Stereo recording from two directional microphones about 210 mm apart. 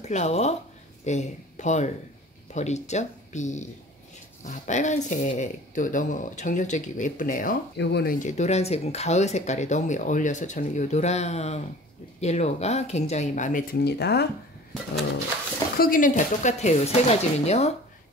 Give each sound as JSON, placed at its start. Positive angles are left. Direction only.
{"t": 0.0, "sound": "speech", "side_deg": 35}
{"t": 15.8, "sound": "speech", "side_deg": 40}